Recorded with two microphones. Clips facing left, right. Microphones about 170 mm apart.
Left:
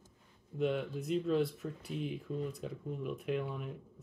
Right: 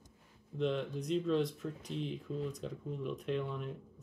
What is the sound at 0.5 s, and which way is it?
Speech, 5° left (ahead or behind).